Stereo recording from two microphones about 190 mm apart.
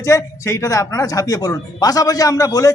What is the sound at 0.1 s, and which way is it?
A man's voice, 15° left (ahead or behind).